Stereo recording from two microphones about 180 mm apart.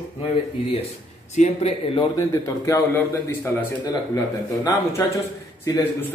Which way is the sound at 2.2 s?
20° left (ahead or behind).